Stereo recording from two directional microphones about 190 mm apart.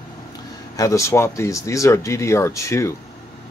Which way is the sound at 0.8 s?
15° left (ahead or behind).